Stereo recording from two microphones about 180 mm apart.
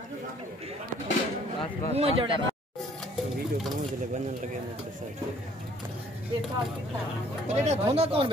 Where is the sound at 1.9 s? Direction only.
35° right (ahead or behind).